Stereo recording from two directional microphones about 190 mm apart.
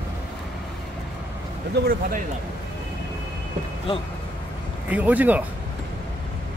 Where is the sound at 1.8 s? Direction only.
55° right (ahead or behind).